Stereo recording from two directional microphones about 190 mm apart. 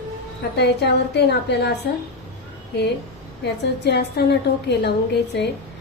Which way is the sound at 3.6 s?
60° left (ahead or behind).